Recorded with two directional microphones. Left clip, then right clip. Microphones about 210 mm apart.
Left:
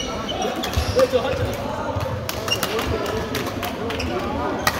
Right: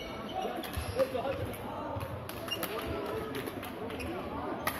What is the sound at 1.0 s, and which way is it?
Basketball bounce, 25° left (ahead or behind).